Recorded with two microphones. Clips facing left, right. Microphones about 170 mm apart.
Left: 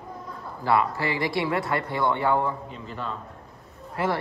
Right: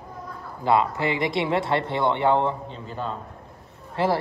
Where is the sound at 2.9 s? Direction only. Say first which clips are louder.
Right 3 dB; 35° right (ahead or behind).